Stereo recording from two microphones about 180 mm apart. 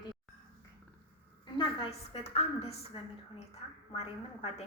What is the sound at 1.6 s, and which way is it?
A woman's voice, 30° left (ahead or behind).